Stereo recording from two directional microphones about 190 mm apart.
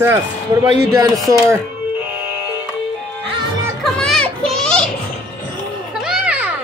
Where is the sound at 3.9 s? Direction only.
5° left (ahead or behind).